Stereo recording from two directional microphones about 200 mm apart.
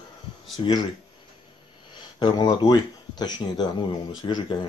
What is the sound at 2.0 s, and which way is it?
Speech, 20° left (ahead or behind).